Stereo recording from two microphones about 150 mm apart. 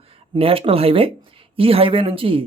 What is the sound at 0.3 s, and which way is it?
Speech, 40° right (ahead or behind).